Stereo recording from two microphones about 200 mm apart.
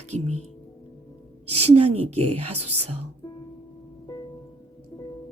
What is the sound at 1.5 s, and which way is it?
A woman's voice, 30° right (ahead or behind).